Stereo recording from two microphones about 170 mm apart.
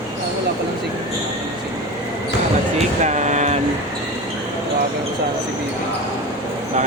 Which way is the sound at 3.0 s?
45° right (ahead or behind).